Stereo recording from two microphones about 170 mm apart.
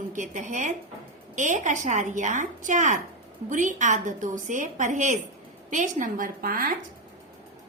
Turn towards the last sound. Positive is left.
turn(degrees=-55)  # may be behind; listen again after turning